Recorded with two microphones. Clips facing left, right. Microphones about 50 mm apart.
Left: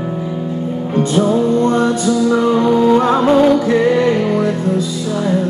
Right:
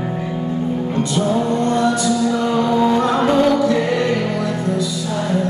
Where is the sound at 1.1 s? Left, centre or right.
Left.